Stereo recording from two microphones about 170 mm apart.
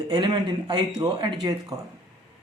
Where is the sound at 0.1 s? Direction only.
25° right (ahead or behind).